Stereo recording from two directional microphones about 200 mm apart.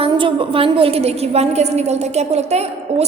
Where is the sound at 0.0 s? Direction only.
25° right (ahead or behind).